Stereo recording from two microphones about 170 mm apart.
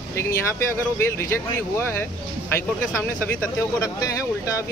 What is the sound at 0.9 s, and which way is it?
Speech, 15° left (ahead or behind).